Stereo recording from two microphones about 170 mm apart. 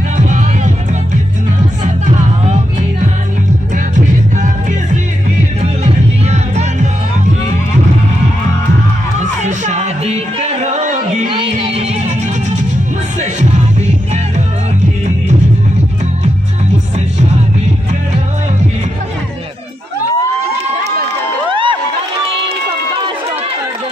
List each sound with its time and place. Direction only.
0.3 s music: 45° right (ahead or behind)
9.2 s music: 45° right (ahead or behind)
11.2 s music: 30° right (ahead or behind)
13.2 s music: 45° right (ahead or behind)
21.5 s crowd: 30° right (ahead or behind)